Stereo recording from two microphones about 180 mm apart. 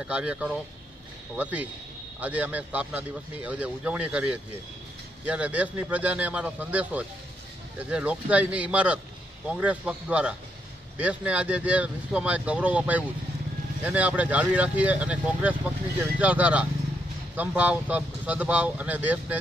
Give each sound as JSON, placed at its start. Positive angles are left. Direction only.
{"t": 0.0, "sound": "a man's voice", "side_deg": -5}